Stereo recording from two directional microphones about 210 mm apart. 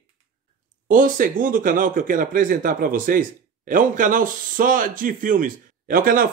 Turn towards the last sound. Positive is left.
turn(degrees=-40)  # may be behind; listen again after turning